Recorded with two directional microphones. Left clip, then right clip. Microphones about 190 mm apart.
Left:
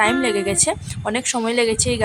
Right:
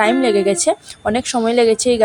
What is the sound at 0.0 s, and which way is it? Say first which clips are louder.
A woman's voice: right 4 dB; 15° right (ahead or behind).